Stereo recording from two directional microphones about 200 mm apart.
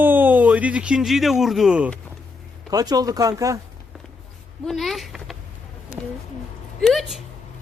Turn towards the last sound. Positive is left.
turn(degrees=0)  # may be behind; listen again after turning